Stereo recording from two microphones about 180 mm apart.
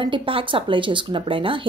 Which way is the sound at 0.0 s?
30° right (ahead or behind).